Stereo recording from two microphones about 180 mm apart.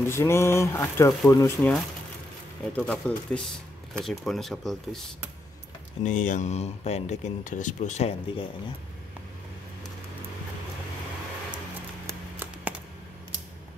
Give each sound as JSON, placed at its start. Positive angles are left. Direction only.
{"t": 0.0, "sound": "speech", "side_deg": 15}
{"t": 2.7, "sound": "speech", "side_deg": 5}
{"t": 6.0, "sound": "speech", "side_deg": 45}